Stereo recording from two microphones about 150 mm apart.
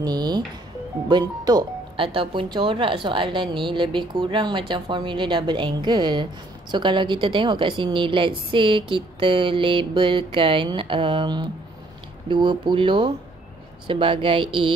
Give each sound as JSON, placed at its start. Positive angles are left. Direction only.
{"t": 0.0, "sound": "speech", "side_deg": -25}